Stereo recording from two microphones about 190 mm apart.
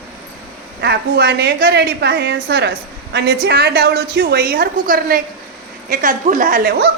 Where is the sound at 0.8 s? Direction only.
60° right (ahead or behind).